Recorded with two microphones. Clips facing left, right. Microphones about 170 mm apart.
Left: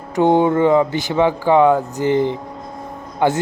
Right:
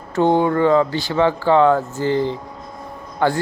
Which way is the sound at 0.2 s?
15° left (ahead or behind).